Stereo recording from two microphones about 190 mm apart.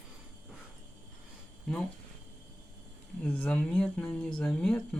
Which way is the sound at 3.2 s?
10° left (ahead or behind).